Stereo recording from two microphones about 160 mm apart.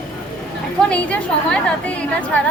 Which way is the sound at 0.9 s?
5° left (ahead or behind).